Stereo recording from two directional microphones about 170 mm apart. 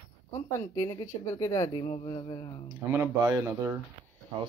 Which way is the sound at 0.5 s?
15° left (ahead or behind).